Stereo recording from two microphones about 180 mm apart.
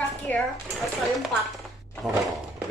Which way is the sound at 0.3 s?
10° left (ahead or behind).